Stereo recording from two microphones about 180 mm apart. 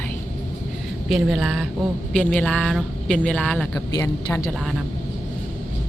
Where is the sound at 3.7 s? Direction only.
15° left (ahead or behind).